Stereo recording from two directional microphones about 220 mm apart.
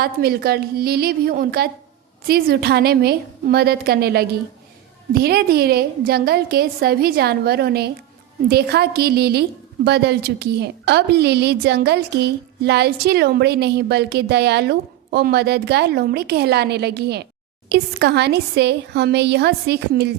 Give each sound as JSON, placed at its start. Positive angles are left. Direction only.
{"t": 0.0, "sound": "a woman's voice", "side_deg": -45}